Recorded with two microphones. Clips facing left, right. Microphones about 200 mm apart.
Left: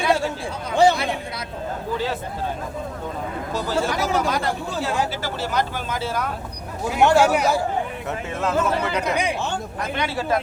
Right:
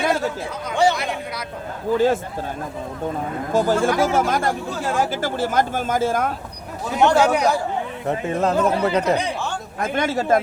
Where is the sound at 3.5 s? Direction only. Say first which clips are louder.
Right 6 dB; 50° right (ahead or behind).